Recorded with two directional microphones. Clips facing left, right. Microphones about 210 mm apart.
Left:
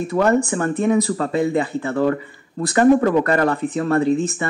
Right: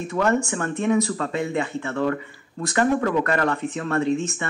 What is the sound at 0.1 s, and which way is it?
Speech, 35° left (ahead or behind).